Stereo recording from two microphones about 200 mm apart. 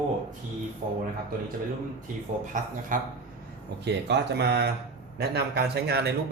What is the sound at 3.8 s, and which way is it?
Speech, 55° right (ahead or behind).